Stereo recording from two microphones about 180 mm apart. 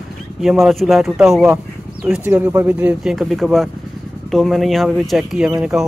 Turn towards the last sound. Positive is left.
turn(degrees=0)  # may be behind; listen again after turning